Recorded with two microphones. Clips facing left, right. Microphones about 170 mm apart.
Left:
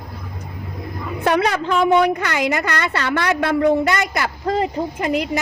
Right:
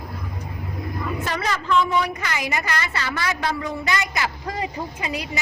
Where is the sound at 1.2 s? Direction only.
65° left (ahead or behind).